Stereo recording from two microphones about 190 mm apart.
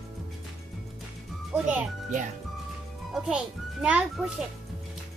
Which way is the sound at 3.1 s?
5° right (ahead or behind).